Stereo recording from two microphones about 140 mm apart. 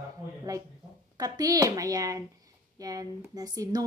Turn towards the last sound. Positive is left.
turn(degrees=-25)  # may be behind; listen again after turning